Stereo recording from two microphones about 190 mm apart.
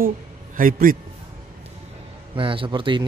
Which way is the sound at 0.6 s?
45° right (ahead or behind).